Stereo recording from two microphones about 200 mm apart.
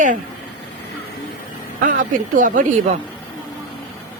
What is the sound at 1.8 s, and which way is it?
Speech, 40° right (ahead or behind).